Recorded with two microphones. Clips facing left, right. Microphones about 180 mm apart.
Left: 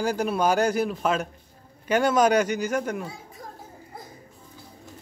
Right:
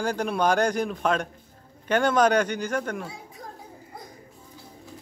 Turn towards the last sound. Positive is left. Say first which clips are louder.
# left 2 dB
turn(degrees=5)  # may be behind; listen again after turning